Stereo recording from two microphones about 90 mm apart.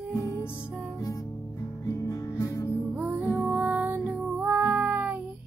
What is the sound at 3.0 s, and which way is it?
Music, 20° right (ahead or behind).